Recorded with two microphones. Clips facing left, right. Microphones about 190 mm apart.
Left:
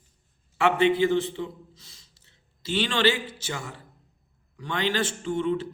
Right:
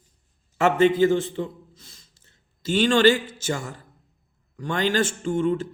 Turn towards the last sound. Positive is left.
turn(degrees=-45)  # may be behind; listen again after turning